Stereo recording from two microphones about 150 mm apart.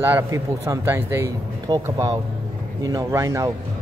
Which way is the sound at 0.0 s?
15° right (ahead or behind).